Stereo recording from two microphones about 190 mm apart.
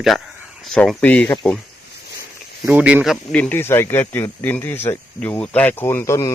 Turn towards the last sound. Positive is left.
turn(degrees=15)  # may be behind; listen again after turning